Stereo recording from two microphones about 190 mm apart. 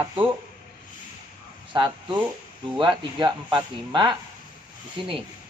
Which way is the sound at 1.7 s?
20° right (ahead or behind).